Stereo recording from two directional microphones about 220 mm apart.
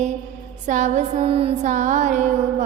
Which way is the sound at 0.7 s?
35° right (ahead or behind).